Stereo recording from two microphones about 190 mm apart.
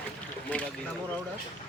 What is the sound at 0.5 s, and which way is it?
Speech, 10° left (ahead or behind).